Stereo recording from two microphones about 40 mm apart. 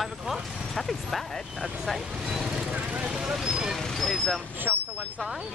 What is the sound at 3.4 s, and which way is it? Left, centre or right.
Speech, centre.